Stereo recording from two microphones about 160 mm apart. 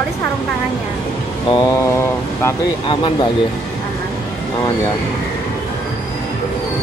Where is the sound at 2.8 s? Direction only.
30° left (ahead or behind).